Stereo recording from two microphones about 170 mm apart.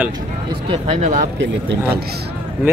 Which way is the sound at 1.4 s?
90° right.